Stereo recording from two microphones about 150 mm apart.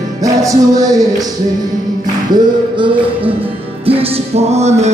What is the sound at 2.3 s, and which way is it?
Music, 30° right (ahead or behind).